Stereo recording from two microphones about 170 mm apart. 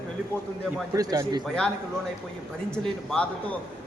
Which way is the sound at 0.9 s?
20° right (ahead or behind).